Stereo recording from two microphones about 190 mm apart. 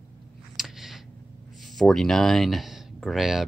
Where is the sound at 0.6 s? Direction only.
Centre (ahead or behind).